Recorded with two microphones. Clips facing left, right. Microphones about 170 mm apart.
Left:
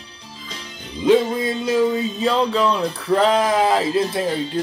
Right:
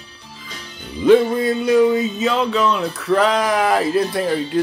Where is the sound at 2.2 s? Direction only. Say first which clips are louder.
Left 1 dB; 35° left (ahead or behind).